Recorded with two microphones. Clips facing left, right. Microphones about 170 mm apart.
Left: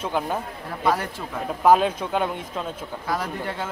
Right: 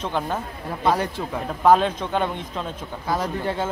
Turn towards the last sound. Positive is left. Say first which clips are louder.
# right 4 dB
turn(degrees=-25)  # may be behind; listen again after turning